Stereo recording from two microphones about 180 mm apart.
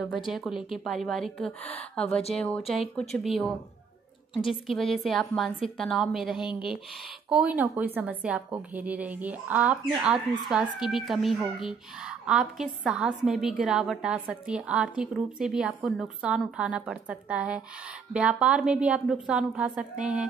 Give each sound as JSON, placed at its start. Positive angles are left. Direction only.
{"t": 0.3, "sound": "speech", "side_deg": 0}
{"t": 1.6, "sound": "a woman's voice", "side_deg": 35}
{"t": 2.3, "sound": "a woman's voice", "side_deg": 5}